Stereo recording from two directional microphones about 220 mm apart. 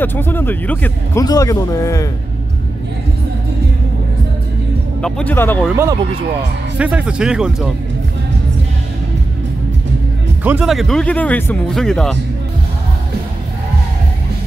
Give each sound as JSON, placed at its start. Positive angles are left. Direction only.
{"t": 0.0, "sound": "speech", "side_deg": 10}
{"t": 5.0, "sound": "speech", "side_deg": 10}
{"t": 5.7, "sound": "speech", "side_deg": -10}
{"t": 10.4, "sound": "speech", "side_deg": -5}